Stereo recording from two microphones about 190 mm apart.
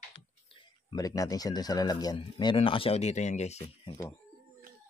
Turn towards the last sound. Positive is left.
turn(degrees=35)  # may be behind; listen again after turning